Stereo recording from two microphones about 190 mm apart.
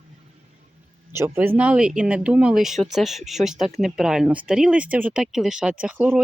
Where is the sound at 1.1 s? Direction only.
10° right (ahead or behind).